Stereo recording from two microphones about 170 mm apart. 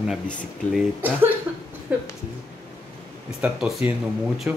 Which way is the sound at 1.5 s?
10° right (ahead or behind).